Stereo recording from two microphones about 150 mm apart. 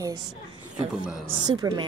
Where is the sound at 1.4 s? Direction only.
25° right (ahead or behind).